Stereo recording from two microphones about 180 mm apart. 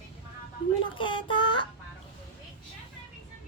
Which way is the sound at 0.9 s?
25° left (ahead or behind).